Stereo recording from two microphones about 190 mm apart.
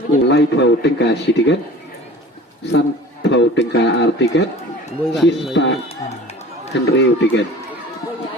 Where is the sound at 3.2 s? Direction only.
70° left (ahead or behind).